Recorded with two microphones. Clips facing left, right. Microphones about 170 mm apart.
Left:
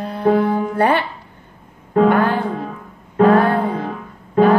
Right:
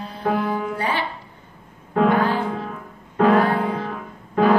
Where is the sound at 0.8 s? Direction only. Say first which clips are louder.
Left 8 dB; 60° left (ahead or behind).